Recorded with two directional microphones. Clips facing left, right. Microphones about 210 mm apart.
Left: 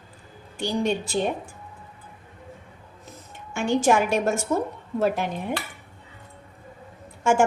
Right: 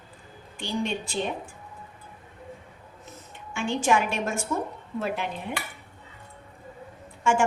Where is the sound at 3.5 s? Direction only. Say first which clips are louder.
Left 4 dB; 45° left (ahead or behind).